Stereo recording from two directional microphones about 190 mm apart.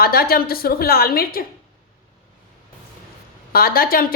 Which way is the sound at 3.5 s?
50° left (ahead or behind).